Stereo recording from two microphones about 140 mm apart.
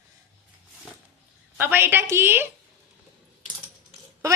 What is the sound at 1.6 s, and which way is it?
Speech, 15° right (ahead or behind).